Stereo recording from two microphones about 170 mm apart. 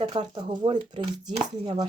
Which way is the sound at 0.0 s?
25° right (ahead or behind).